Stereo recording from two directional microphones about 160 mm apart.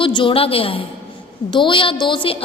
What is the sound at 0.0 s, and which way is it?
A woman's voice, 30° left (ahead or behind).